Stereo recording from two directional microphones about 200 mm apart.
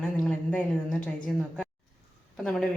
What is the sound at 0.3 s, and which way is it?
Speech, 5° left (ahead or behind).